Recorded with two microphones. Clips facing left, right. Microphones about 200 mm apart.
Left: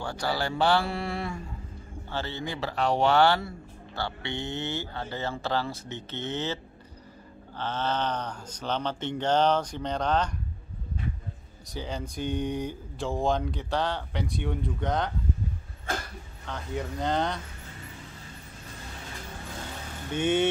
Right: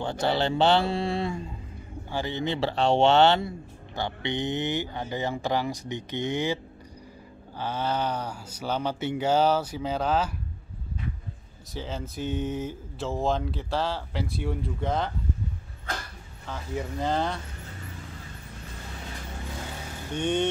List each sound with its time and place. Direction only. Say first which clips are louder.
0.0 s speech: right 4 dB; 25° right (ahead or behind); by 10.3 s 5° right (ahead or behind)
11.7 s speech: even; centre (ahead or behind)
16.4 s speech: right 1 dB; 5° right (ahead or behind)
20.2 s speech: left 1 dB; 5° left (ahead or behind)